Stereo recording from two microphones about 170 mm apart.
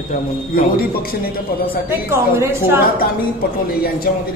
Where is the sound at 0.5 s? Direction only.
60° left (ahead or behind).